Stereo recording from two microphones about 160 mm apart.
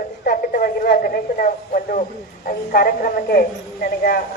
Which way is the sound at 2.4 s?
70° left (ahead or behind).